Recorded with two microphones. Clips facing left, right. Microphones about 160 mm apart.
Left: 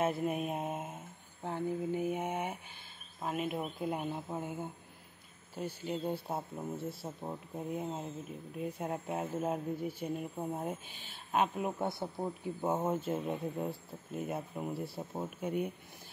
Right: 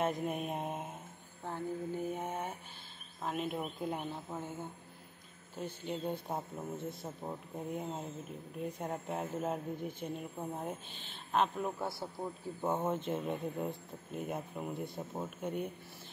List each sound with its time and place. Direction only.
0.0 s speech: 5° left (ahead or behind)
5.6 s speech: 10° left (ahead or behind)
11.8 s speech: 20° left (ahead or behind)
12.6 s speech: 10° left (ahead or behind)